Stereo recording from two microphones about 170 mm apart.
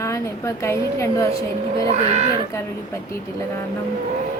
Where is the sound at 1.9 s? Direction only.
40° right (ahead or behind).